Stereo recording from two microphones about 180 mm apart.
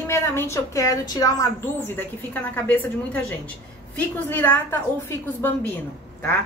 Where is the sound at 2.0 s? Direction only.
10° left (ahead or behind).